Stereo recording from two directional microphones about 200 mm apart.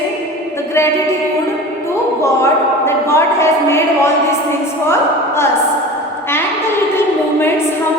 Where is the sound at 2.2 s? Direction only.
15° left (ahead or behind).